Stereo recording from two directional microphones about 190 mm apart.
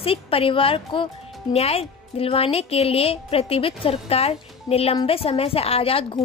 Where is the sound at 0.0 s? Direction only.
30° left (ahead or behind).